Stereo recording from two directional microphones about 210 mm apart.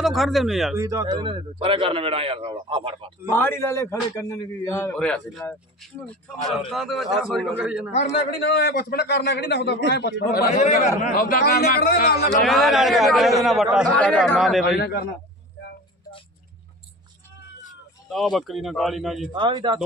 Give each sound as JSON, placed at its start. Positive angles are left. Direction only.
{"t": 0.0, "sound": "a man's voice", "side_deg": 0}
{"t": 0.7, "sound": "a man's voice", "side_deg": -15}
{"t": 3.3, "sound": "a man's voice", "side_deg": 10}
{"t": 7.9, "sound": "a man's voice", "side_deg": 30}
{"t": 8.5, "sound": "a man's voice", "side_deg": 50}
{"t": 10.6, "sound": "a man's voice", "side_deg": 35}
{"t": 12.3, "sound": "a man's voice", "side_deg": 0}
{"t": 18.1, "sound": "a man's voice", "side_deg": 0}
{"t": 19.3, "sound": "a man's voice", "side_deg": -20}